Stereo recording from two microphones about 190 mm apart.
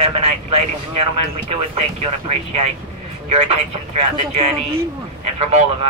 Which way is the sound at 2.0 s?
35° right (ahead or behind).